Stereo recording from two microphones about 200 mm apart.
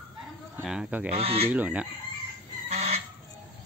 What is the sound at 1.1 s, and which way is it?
Speech, 30° right (ahead or behind).